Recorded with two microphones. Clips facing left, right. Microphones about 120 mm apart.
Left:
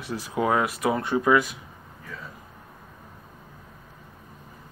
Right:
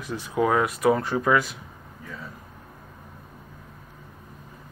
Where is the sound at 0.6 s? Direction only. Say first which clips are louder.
Right 4 dB; 5° left (ahead or behind).